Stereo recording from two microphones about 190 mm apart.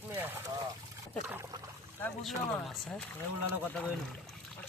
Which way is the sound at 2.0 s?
5° left (ahead or behind).